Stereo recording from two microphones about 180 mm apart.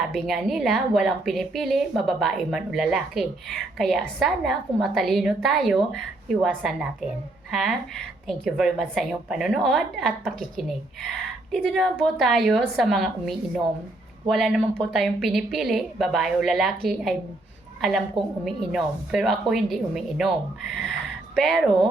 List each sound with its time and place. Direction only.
0.1 s a woman's voice: centre (ahead or behind)
17.7 s a woman's voice: centre (ahead or behind)
21.3 s speech: centre (ahead or behind)